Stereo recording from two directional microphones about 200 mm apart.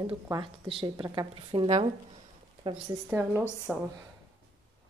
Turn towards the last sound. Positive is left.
turn(degrees=0)  # may be behind; listen again after turning